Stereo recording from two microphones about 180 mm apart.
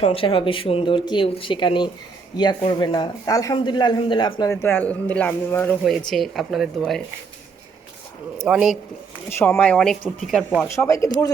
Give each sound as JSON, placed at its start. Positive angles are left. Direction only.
{"t": 0.0, "sound": "a man's voice", "side_deg": 30}
{"t": 6.1, "sound": "speech", "side_deg": 0}
{"t": 8.4, "sound": "speech", "side_deg": -5}
{"t": 9.4, "sound": "speech", "side_deg": 10}
{"t": 10.8, "sound": "speech", "side_deg": 15}